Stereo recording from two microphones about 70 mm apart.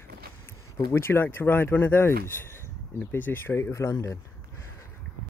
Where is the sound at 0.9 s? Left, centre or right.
Left.